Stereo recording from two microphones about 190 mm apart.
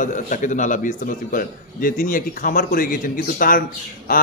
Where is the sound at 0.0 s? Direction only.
40° left (ahead or behind).